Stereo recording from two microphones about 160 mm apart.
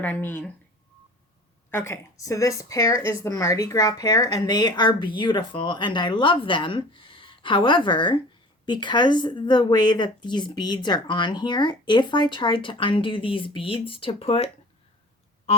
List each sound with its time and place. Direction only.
0.0 s speech: 10° left (ahead or behind)
1.7 s speech: 15° left (ahead or behind); by 14.5 s 35° left (ahead or behind)
15.5 s a sound: 40° left (ahead or behind)